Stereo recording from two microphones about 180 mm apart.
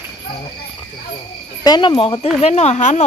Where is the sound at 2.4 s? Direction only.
35° left (ahead or behind).